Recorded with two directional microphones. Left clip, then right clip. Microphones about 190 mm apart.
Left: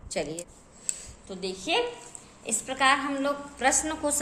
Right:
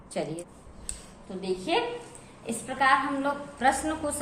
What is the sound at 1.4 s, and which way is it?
A woman's voice, 40° left (ahead or behind).